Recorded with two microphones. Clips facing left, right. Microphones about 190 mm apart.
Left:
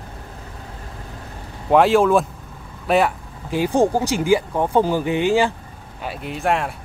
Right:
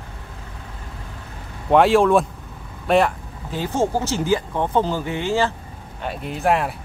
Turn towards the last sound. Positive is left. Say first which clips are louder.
# right 1 dB
turn(degrees=0)  # may be behind; listen again after turning